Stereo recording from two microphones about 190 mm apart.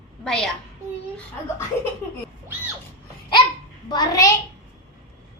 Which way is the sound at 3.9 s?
20° left (ahead or behind).